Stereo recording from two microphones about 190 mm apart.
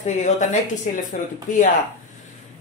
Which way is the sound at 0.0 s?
40° left (ahead or behind).